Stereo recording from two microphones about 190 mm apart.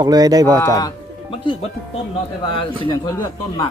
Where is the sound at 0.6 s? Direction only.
20° left (ahead or behind).